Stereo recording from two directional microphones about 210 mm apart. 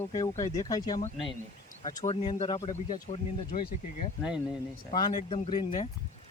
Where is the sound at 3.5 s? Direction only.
45° left (ahead or behind).